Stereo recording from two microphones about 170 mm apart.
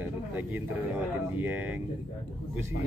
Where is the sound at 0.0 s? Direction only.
10° right (ahead or behind).